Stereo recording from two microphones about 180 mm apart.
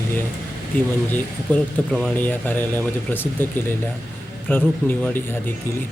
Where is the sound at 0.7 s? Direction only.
10° left (ahead or behind).